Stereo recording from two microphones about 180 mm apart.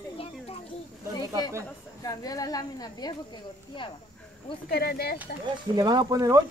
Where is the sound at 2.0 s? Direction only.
20° left (ahead or behind).